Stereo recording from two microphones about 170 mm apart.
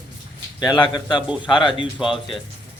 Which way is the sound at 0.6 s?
25° left (ahead or behind).